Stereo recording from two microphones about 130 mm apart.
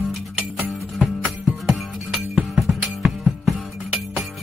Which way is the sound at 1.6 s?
Centre (ahead or behind).